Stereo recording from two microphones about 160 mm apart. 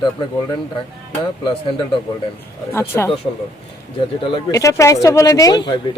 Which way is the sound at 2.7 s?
15° left (ahead or behind).